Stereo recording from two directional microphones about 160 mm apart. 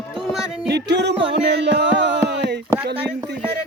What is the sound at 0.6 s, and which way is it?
Music, 90° right.